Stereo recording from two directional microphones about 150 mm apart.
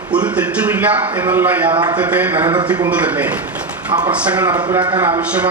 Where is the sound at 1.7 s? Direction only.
30° right (ahead or behind).